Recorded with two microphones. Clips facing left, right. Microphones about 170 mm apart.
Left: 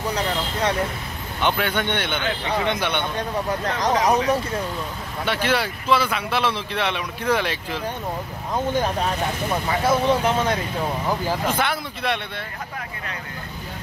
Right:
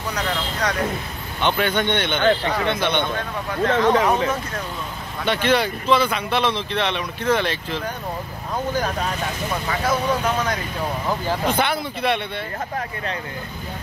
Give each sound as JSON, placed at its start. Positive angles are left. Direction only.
{"t": 0.1, "sound": "vehicle", "side_deg": 30}
{"t": 1.4, "sound": "speech", "side_deg": 5}
{"t": 3.8, "sound": "speech", "side_deg": 40}
{"t": 5.2, "sound": "speech", "side_deg": 5}
{"t": 9.7, "sound": "speech", "side_deg": 25}
{"t": 11.1, "sound": "speech", "side_deg": 5}